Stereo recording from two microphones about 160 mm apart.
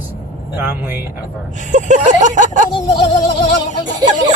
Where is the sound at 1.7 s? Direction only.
50° right (ahead or behind).